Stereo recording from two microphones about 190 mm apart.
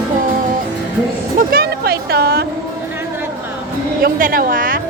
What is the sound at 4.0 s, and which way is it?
Speech, 50° right (ahead or behind).